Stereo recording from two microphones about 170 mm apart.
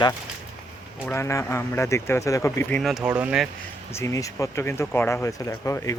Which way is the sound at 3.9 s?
15° left (ahead or behind).